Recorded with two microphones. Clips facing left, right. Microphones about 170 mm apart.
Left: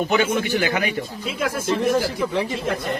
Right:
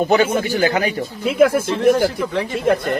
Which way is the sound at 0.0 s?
35° right (ahead or behind).